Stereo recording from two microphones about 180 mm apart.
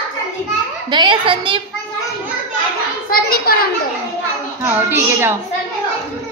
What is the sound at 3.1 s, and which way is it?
Speech, 55° left (ahead or behind).